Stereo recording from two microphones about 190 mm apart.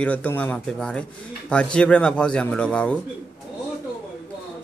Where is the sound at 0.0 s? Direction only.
5° left (ahead or behind).